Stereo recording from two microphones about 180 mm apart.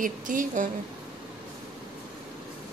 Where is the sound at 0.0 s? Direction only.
50° right (ahead or behind).